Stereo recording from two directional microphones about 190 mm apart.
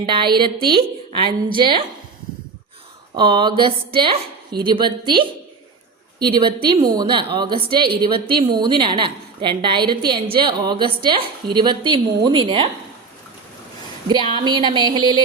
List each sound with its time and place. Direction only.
0.0 s a woman's voice: 25° right (ahead or behind)
3.2 s a woman's voice: 25° right (ahead or behind)
14.1 s a woman's voice: 25° right (ahead or behind)